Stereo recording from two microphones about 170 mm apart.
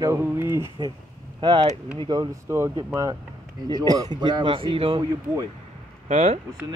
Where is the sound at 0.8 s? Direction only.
25° right (ahead or behind).